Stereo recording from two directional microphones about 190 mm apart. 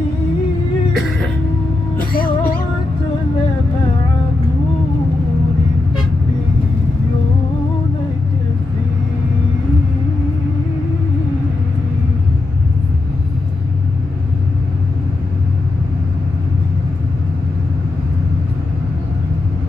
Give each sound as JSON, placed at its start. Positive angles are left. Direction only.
{"t": 2.0, "sound": "cat", "side_deg": 50}